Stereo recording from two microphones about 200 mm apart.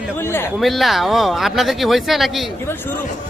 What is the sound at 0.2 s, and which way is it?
Speech, 10° left (ahead or behind).